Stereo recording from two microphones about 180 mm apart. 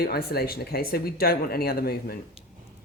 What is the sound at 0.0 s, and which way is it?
Speech, 60° left (ahead or behind).